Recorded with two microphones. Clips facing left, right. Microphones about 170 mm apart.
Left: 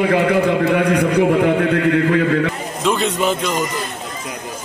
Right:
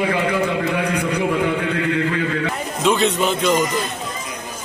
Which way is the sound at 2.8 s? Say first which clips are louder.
Even; 5° left (ahead or behind).